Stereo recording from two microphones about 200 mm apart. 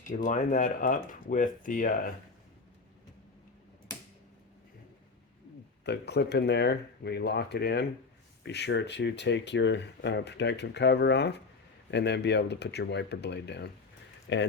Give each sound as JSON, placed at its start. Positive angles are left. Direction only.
{"t": 0.1, "sound": "speech", "side_deg": 40}
{"t": 5.8, "sound": "speech", "side_deg": 55}